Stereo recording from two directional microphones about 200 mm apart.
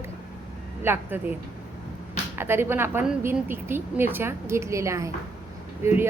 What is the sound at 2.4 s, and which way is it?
Speech, 10° right (ahead or behind).